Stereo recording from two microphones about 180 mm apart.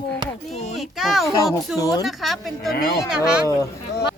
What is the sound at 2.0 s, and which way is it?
Speech, centre (ahead or behind).